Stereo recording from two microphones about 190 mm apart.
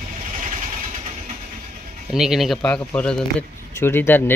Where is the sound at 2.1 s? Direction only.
Centre (ahead or behind).